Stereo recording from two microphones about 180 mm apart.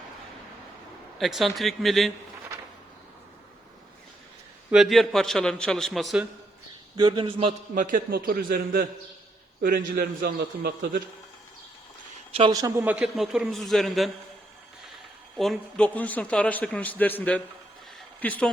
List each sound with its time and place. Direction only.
1.2 s a man's voice: centre (ahead or behind)
4.7 s a man's voice: centre (ahead or behind)
6.9 s speech: 25° right (ahead or behind)
7.8 s a man's voice: 50° right (ahead or behind)
12.3 s a man's voice: 25° right (ahead or behind); by 14.1 s centre (ahead or behind)
15.4 s a man's voice: 5° left (ahead or behind)